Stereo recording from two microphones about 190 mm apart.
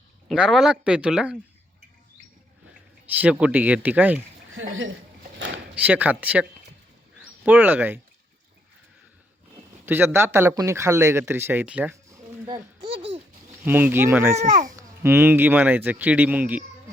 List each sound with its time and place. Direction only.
0.3 s speech: 5° right (ahead or behind)
3.2 s speech: 10° right (ahead or behind)
5.7 s speech: 10° right (ahead or behind)
9.8 s speech: 10° right (ahead or behind)
12.0 s a sound: 15° right (ahead or behind)
13.0 s a sound: 30° right (ahead or behind)
13.7 s speech: 10° right (ahead or behind)
14.3 s a child's voice: 40° right (ahead or behind)
14.8 s speech: 15° right (ahead or behind)